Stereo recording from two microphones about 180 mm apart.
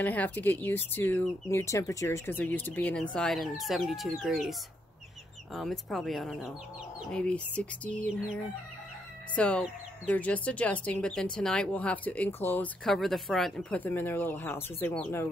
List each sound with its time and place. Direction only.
0.0 s speech: 10° left (ahead or behind)
9.3 s speech: 5° left (ahead or behind)